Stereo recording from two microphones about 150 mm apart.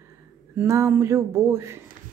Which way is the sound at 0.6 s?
15° right (ahead or behind).